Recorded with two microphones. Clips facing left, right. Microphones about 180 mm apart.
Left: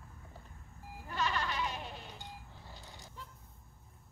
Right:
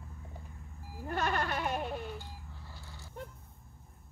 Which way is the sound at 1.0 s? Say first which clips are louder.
Right 3 dB; 50° right (ahead or behind).